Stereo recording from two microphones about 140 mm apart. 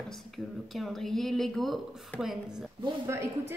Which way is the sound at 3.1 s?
20° right (ahead or behind).